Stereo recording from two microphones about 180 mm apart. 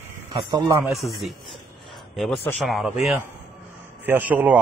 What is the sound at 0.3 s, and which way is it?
Speech, 20° right (ahead or behind).